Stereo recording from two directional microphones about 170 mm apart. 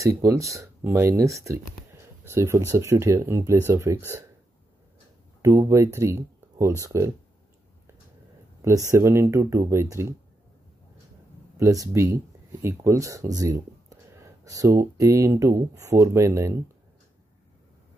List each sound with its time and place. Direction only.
0.0 s speech: 15° right (ahead or behind)
5.4 s speech: 15° right (ahead or behind)
8.6 s speech: 15° right (ahead or behind)
11.5 s speech: 20° right (ahead or behind)